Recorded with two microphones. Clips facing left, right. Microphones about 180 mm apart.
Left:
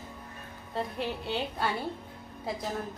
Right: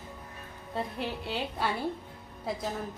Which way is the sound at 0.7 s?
Centre (ahead or behind).